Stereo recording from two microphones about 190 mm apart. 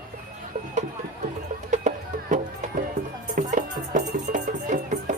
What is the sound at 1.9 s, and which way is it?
Music, 40° right (ahead or behind).